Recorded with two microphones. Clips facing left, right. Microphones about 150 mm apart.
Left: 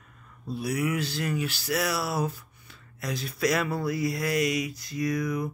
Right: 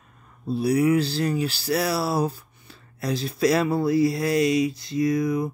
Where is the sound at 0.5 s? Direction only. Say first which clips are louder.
Right 8 dB; 30° right (ahead or behind).